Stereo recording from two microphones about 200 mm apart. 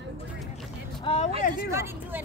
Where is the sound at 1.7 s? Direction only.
10° right (ahead or behind).